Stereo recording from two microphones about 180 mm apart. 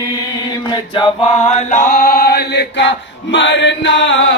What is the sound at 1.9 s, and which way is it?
Chant, 55° left (ahead or behind).